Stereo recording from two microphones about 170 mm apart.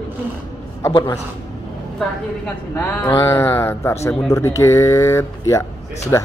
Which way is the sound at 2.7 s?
15° left (ahead or behind).